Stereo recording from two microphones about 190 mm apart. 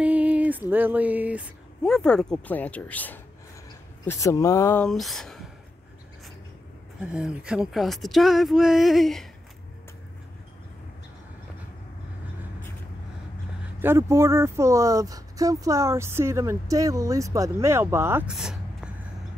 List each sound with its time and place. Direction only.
0.0 s music: 5° right (ahead or behind)
1.9 s speech: 5° left (ahead or behind)
4.8 s speech: centre (ahead or behind)
7.0 s speech: 5° right (ahead or behind)
13.7 s speech: 15° right (ahead or behind)